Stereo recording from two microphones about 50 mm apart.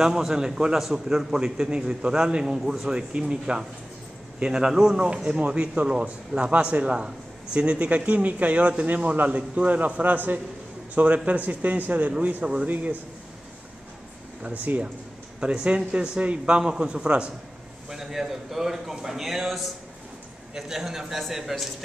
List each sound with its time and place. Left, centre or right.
0.0 s a man's voice: centre
5.4 s a man's voice: right
8.8 s speech: right
14.4 s speech: right
15.4 s a man's voice: right
17.8 s a man's voice: centre